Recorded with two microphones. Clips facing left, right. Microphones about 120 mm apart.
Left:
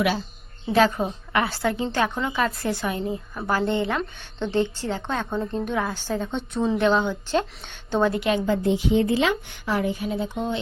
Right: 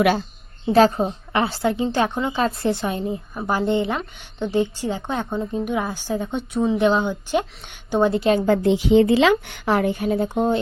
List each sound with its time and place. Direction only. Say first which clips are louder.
0.7 s a woman's voice: right 4 dB; 35° right (ahead or behind); by 8.2 s 15° right (ahead or behind)
8.2 s a woman's voice: right 5 dB; 40° right (ahead or behind)
8.4 s a woman's voice: right 4 dB; 85° right; by 10.6 s 45° right (ahead or behind)